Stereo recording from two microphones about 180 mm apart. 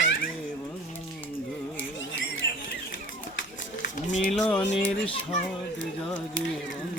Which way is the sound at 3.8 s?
45° left (ahead or behind).